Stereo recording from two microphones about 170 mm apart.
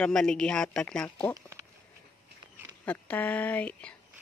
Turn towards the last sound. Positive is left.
turn(degrees=5)  # may be behind; listen again after turning